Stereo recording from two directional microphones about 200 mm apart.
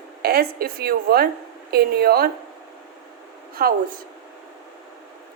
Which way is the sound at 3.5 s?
45° right (ahead or behind).